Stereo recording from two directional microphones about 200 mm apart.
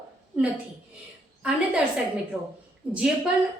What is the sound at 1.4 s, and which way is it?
Speech, 5° right (ahead or behind).